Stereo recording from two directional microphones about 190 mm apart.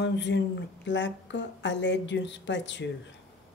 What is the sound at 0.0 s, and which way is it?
A woman's voice, 70° left (ahead or behind).